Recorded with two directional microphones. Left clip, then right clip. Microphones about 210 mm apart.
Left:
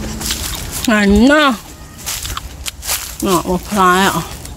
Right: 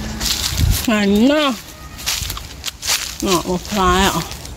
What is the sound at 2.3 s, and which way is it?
Walk, 5° left (ahead or behind).